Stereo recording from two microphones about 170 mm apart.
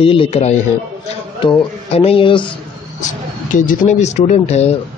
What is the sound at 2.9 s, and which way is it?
A man's voice, 50° left (ahead or behind).